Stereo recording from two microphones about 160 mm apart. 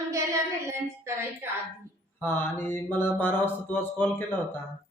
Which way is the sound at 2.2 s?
15° left (ahead or behind).